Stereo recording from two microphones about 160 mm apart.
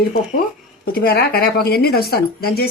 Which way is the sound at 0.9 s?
80° left.